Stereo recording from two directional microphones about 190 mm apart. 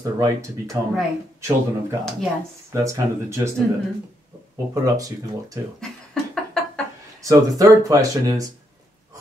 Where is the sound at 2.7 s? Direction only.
15° right (ahead or behind).